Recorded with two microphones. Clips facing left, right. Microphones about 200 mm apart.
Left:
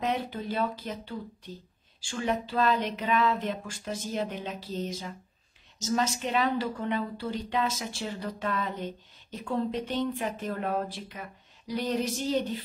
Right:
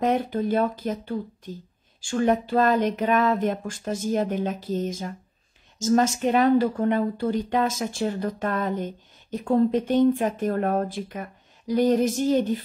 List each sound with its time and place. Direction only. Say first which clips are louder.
0.0 s a woman's voice: right 8 dB; 50° right (ahead or behind)